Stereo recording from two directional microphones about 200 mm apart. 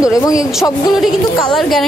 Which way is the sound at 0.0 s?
15° left (ahead or behind).